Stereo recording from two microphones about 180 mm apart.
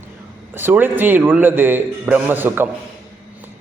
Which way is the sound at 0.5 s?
10° right (ahead or behind).